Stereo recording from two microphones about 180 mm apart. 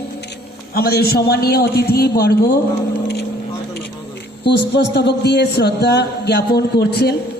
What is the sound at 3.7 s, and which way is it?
A man's voice, 70° left (ahead or behind).